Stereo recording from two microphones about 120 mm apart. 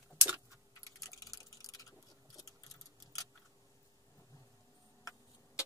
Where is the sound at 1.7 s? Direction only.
30° left (ahead or behind).